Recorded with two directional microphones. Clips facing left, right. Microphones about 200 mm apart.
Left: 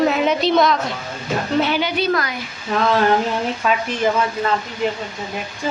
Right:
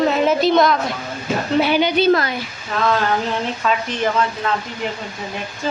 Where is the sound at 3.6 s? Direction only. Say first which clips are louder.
Even; 5° left (ahead or behind).